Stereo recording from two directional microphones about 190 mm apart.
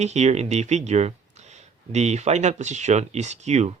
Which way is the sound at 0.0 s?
35° right (ahead or behind).